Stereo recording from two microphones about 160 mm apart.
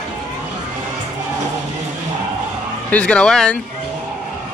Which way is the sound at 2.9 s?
5° left (ahead or behind).